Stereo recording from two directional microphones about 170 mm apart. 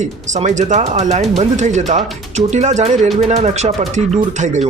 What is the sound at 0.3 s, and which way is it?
Speech, 45° right (ahead or behind).